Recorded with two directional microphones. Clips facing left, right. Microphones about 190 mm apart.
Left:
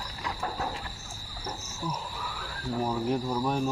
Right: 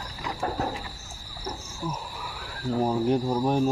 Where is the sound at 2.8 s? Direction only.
30° right (ahead or behind).